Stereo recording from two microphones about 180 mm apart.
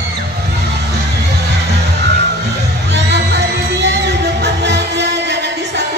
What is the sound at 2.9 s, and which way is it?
Music, 70° right (ahead or behind).